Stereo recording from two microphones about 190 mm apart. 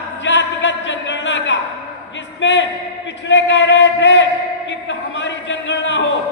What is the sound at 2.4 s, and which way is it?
A man's voice, 75° left (ahead or behind).